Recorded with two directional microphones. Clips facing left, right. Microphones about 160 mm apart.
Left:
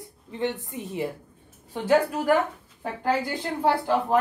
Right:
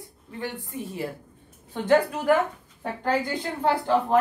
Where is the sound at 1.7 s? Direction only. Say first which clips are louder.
Right 1 dB; 10° left (ahead or behind).